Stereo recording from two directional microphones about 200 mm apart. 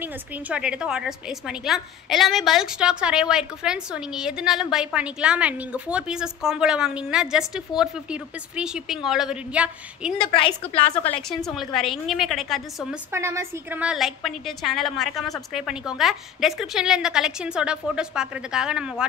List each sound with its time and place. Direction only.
0.0 s a woman's voice: 5° right (ahead or behind)
10.7 s a woman's voice: 30° left (ahead or behind)
11.1 s a woman's voice: 5° left (ahead or behind)
13.1 s a woman's voice: 15° right (ahead or behind)